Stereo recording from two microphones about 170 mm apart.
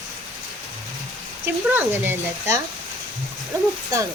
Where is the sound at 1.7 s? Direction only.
10° right (ahead or behind).